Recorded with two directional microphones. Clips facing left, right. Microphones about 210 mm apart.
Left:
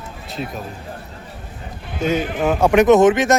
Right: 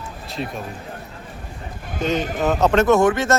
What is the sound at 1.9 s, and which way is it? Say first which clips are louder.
Speech: left 2 dB; 10° left (ahead or behind).